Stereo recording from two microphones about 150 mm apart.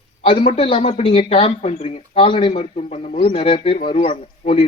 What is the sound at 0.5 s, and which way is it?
A man's voice, 40° left (ahead or behind).